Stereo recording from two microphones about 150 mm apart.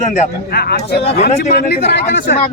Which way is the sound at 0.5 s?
90° left.